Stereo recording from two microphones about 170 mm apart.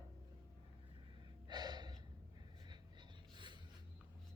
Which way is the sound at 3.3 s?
25° right (ahead or behind).